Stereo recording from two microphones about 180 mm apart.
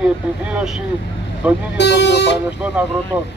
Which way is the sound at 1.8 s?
75° left (ahead or behind).